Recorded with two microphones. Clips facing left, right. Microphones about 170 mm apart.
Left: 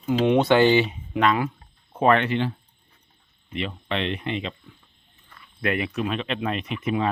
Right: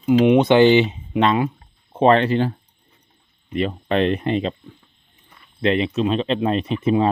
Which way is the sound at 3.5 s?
45° right (ahead or behind).